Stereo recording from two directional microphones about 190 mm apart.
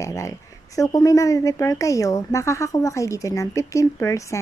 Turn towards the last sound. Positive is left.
turn(degrees=15)  # may be behind; listen again after turning